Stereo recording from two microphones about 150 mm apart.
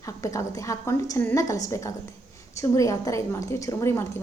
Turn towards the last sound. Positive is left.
turn(degrees=20)  # may be behind; listen again after turning